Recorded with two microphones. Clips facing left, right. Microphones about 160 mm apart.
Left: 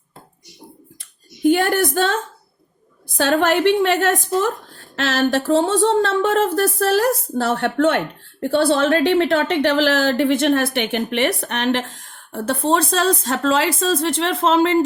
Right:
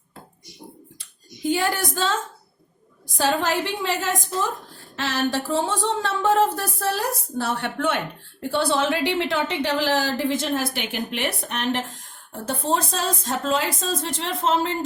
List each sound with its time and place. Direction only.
1.5 s a woman's voice: 55° left (ahead or behind)
3.2 s a woman's voice: 65° left (ahead or behind); by 14.8 s 90° left